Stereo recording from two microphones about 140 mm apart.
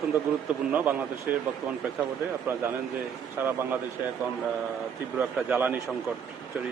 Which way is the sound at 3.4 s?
15° right (ahead or behind).